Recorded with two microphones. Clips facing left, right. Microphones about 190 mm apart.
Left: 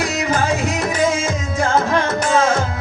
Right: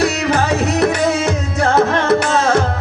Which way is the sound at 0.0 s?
65° right (ahead or behind).